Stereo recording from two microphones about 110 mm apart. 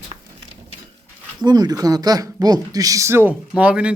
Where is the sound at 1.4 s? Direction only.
40° right (ahead or behind); by 3.3 s 20° right (ahead or behind).